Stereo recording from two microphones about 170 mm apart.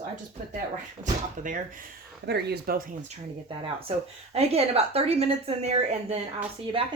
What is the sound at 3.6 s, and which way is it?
Speech, 35° right (ahead or behind).